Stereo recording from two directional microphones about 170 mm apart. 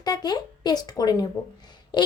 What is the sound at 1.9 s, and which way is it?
Quack, 25° left (ahead or behind).